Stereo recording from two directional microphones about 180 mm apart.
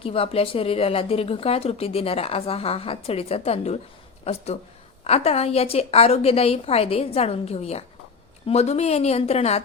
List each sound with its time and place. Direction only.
0.0 s speech: 30° left (ahead or behind)